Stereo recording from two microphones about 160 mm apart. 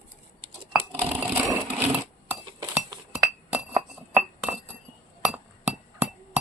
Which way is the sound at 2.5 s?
25° right (ahead or behind).